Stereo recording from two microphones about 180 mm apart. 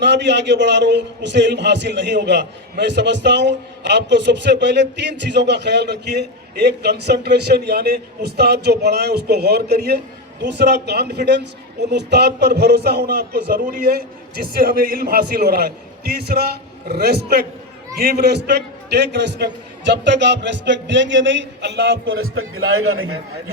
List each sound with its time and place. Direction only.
0.0 s a man's voice: 75° right (ahead or behind); by 22.4 s 90° right